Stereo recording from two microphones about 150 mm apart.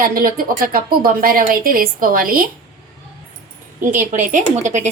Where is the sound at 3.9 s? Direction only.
60° right (ahead or behind).